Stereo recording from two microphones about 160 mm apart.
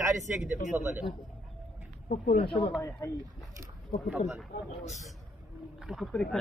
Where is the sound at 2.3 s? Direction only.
35° left (ahead or behind).